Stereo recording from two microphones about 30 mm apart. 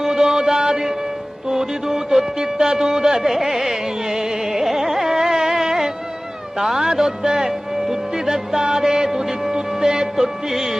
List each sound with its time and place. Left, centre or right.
0.0 s music: centre
9.5 s music: centre